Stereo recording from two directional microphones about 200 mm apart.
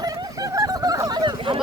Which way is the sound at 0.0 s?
20° right (ahead or behind).